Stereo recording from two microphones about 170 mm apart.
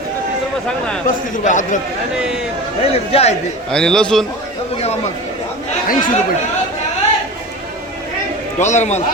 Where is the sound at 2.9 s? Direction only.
35° left (ahead or behind).